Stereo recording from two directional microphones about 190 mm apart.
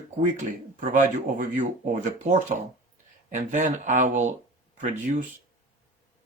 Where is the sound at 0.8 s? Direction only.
45° right (ahead or behind).